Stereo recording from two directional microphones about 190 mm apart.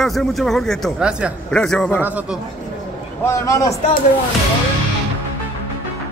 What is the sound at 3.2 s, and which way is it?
Speech, 15° left (ahead or behind).